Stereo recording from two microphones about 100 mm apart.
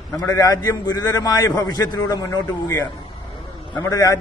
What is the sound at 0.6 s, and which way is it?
A man's voice, 45° left (ahead or behind).